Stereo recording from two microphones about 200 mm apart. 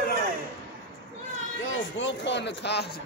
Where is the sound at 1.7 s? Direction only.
65° left (ahead or behind).